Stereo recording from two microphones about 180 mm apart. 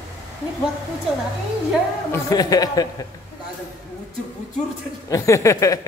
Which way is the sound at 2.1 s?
20° left (ahead or behind).